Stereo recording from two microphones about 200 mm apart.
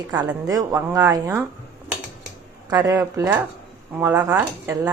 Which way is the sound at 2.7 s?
15° right (ahead or behind).